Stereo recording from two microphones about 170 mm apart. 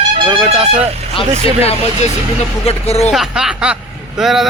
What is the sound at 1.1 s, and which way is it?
Speech, 35° left (ahead or behind).